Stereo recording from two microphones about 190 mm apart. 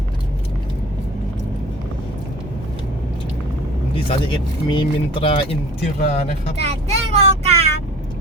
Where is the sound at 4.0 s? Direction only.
25° left (ahead or behind).